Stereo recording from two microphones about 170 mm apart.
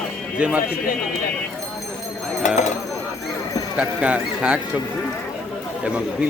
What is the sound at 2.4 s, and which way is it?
Speech, 45° left (ahead or behind).